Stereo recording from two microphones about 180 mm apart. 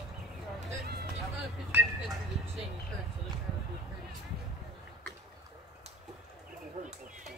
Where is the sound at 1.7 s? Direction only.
10° right (ahead or behind).